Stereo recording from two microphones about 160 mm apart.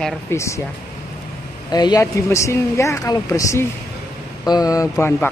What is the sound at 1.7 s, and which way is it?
Speech, 25° left (ahead or behind).